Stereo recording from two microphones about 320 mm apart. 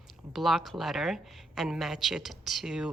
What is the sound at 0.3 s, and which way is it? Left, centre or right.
A woman's voice, centre.